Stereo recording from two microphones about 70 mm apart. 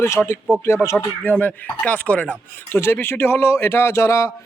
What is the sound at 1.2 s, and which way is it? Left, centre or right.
Speech, left.